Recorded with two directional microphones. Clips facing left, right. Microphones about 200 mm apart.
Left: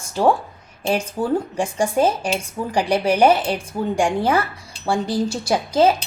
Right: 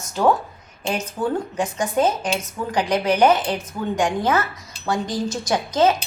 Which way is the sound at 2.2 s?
10° left (ahead or behind).